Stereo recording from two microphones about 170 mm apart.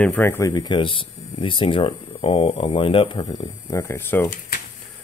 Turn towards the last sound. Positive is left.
turn(degrees=10)  # may be behind; listen again after turning